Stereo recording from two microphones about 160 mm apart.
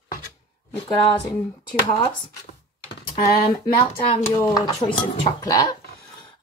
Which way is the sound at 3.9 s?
20° left (ahead or behind).